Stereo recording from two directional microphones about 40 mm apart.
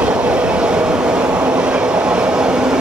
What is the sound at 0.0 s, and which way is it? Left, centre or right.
Train, right.